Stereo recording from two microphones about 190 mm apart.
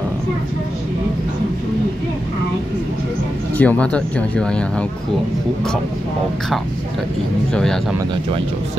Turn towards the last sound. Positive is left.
turn(degrees=0)  # may be behind; listen again after turning